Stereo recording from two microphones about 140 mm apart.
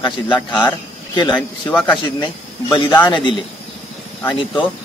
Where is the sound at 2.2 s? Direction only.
35° left (ahead or behind).